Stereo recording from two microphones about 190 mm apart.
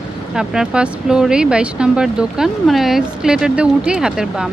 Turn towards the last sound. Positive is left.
turn(degrees=-5)  # may be behind; listen again after turning